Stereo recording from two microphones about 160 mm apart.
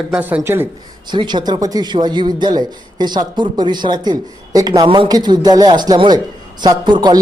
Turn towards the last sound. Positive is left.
turn(degrees=-30)  # may be behind; listen again after turning